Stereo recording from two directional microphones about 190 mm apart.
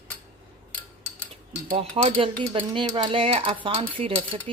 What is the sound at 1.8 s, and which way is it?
Cutlery, 30° right (ahead or behind).